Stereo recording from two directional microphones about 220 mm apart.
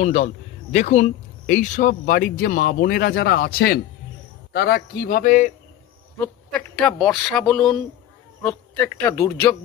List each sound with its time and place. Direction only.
0.0 s speech: 30° left (ahead or behind)
6.1 s speech: 5° left (ahead or behind)